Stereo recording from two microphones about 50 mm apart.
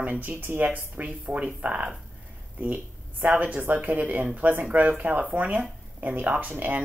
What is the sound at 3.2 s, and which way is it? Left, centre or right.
Speech, right.